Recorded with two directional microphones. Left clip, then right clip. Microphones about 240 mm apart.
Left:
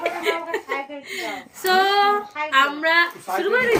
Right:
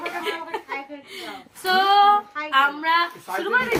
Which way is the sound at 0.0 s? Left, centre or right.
Centre.